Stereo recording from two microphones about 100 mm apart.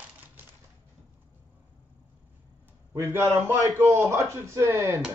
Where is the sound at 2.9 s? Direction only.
25° right (ahead or behind).